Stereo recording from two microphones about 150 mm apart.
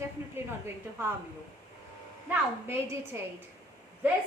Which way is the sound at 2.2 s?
15° right (ahead or behind).